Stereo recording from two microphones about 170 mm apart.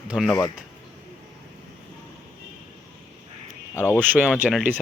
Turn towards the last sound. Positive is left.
turn(degrees=0)  # may be behind; listen again after turning